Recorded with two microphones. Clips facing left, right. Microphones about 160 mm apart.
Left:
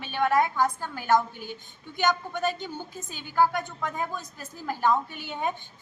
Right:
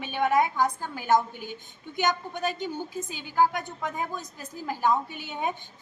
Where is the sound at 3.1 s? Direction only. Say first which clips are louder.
Left 1 dB; 15° right (ahead or behind).